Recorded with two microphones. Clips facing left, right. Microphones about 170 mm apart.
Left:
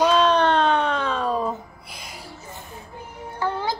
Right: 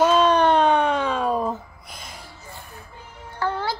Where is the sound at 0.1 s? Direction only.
10° right (ahead or behind).